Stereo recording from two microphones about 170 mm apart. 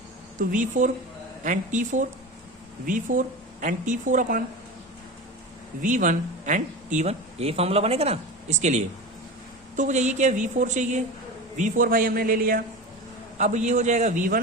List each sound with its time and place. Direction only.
0.3 s speech: 50° right (ahead or behind)
5.8 s a man's voice: 50° right (ahead or behind)
13.4 s speech: 45° right (ahead or behind)